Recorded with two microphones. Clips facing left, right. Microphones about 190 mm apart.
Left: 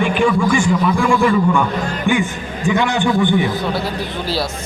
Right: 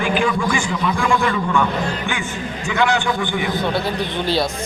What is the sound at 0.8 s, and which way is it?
Speech, 5° left (ahead or behind).